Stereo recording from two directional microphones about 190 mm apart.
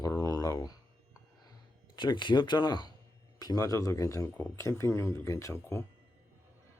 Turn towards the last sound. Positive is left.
turn(degrees=15)  # may be behind; listen again after turning